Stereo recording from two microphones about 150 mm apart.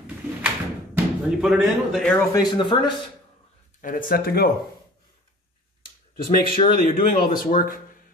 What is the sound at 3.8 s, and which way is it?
Speech, 65° left (ahead or behind).